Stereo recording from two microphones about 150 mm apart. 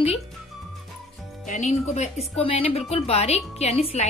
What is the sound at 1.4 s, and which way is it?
Speech, 55° left (ahead or behind).